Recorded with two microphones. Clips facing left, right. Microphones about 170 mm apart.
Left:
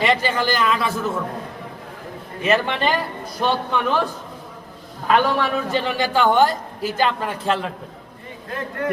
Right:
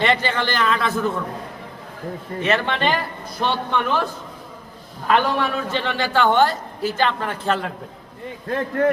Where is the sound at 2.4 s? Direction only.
10° left (ahead or behind).